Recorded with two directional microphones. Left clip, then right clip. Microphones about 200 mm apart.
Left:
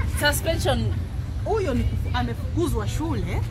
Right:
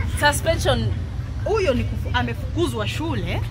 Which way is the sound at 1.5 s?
35° right (ahead or behind).